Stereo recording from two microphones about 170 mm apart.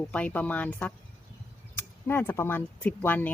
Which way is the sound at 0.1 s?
10° left (ahead or behind).